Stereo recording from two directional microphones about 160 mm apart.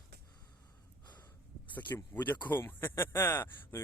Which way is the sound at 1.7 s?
10° left (ahead or behind).